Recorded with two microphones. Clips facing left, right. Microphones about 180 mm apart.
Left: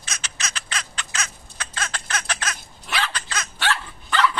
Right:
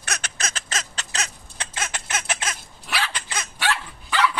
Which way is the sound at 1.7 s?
20° right (ahead or behind).